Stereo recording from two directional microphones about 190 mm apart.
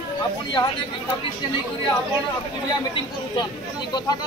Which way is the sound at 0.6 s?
20° left (ahead or behind).